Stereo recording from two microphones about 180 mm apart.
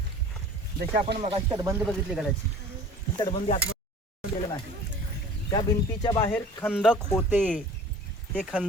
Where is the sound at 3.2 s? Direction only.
30° left (ahead or behind).